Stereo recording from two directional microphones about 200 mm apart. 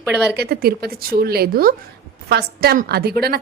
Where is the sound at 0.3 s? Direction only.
50° right (ahead or behind).